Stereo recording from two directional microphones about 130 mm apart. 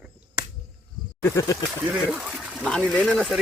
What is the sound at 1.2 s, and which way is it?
Speech, 20° left (ahead or behind).